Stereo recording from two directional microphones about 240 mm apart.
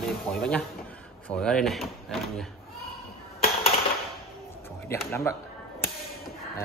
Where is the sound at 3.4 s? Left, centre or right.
Left.